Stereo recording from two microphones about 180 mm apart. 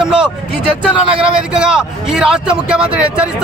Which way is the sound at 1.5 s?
5° right (ahead or behind).